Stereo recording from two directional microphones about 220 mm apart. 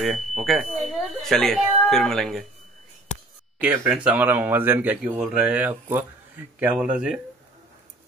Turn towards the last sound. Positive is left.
turn(degrees=-5)  # may be behind; listen again after turning